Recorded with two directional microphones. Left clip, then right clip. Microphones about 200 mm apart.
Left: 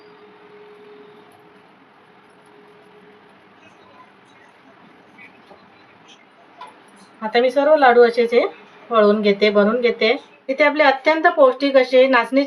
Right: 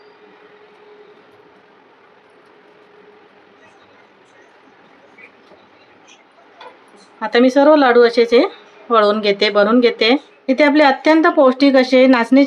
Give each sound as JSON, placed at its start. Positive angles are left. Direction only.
{"t": 7.2, "sound": "a woman's voice", "side_deg": -55}